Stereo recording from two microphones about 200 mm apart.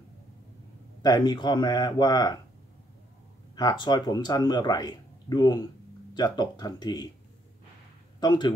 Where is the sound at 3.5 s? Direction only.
20° left (ahead or behind).